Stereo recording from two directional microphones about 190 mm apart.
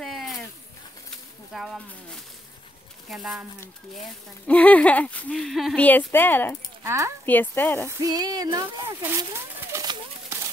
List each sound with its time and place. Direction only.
0.0 s a sound: centre (ahead or behind)
1.5 s speech: centre (ahead or behind)
3.1 s speech: centre (ahead or behind)
4.5 s speech: 5° left (ahead or behind)
6.8 s speech: 15° right (ahead or behind)
7.2 s speech: 10° left (ahead or behind)
8.0 s speech: 20° right (ahead or behind)